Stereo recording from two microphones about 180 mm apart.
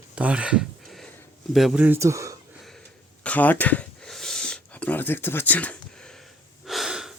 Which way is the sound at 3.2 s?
10° left (ahead or behind).